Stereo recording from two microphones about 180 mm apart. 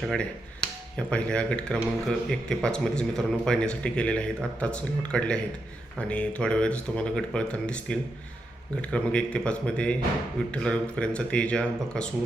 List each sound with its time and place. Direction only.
0.0 s speech: centre (ahead or behind)